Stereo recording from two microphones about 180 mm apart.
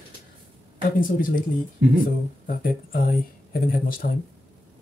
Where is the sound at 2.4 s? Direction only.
50° left (ahead or behind).